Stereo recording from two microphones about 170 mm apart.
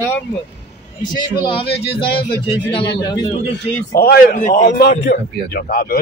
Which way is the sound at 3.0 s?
20° left (ahead or behind).